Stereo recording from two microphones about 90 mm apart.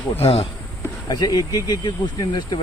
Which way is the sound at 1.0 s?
45° left (ahead or behind).